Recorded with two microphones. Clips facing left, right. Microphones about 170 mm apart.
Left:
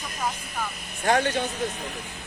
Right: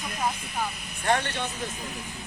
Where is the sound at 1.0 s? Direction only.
45° left (ahead or behind).